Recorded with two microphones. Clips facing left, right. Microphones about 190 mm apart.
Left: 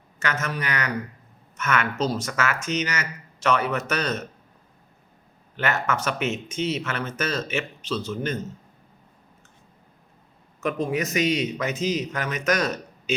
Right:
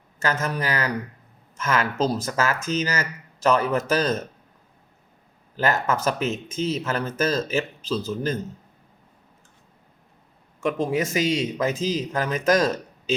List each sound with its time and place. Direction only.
0.2 s speech: 35° right (ahead or behind)
5.5 s speech: 35° right (ahead or behind)
10.8 s speech: 25° right (ahead or behind)